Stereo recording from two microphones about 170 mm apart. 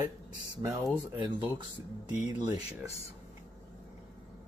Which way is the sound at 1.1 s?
25° right (ahead or behind).